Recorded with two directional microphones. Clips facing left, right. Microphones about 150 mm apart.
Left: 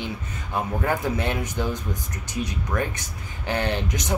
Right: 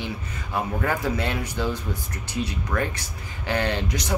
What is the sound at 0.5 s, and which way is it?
Speech, 20° left (ahead or behind).